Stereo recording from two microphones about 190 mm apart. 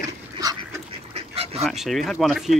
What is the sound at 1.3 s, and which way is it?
Goose, 30° right (ahead or behind).